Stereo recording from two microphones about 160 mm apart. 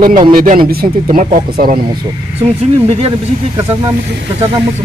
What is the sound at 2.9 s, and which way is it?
Speech, 40° right (ahead or behind).